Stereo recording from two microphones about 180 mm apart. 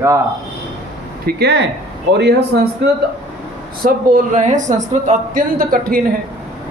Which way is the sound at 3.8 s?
50° right (ahead or behind).